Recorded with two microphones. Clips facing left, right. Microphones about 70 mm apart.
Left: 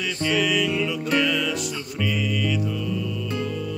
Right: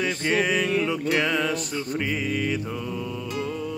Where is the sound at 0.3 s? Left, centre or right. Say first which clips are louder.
Left 1 dB; right.